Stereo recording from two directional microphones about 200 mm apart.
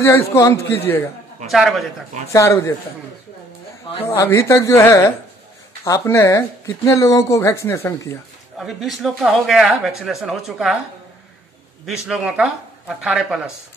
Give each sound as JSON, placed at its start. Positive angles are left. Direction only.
{"t": 0.0, "sound": "speech", "side_deg": 15}
{"t": 1.5, "sound": "speech", "side_deg": 0}
{"t": 2.3, "sound": "speech", "side_deg": 15}
{"t": 3.9, "sound": "speech", "side_deg": 20}
{"t": 8.5, "sound": "speech", "side_deg": 0}
{"t": 11.8, "sound": "speech", "side_deg": -5}